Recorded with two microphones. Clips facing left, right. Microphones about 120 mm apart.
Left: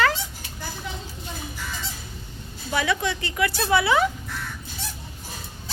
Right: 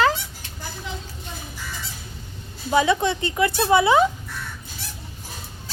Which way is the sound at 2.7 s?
25° right (ahead or behind).